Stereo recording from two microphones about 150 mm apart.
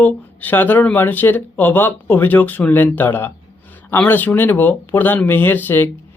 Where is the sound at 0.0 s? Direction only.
10° left (ahead or behind).